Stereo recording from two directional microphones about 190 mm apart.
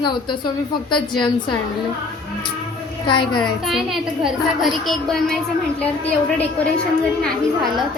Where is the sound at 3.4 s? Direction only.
Centre (ahead or behind).